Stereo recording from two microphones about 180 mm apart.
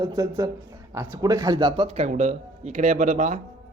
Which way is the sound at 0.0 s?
20° right (ahead or behind).